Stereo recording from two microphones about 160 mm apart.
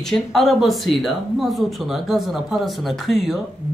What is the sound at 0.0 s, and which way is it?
Speech, centre (ahead or behind).